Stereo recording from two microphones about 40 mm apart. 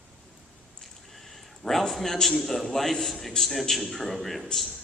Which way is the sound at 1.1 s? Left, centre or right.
Centre.